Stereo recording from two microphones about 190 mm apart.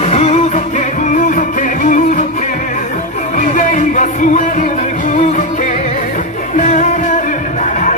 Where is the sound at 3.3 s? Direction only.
40° left (ahead or behind).